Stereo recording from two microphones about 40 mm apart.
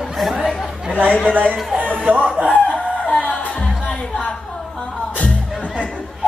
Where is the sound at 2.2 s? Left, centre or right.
Right.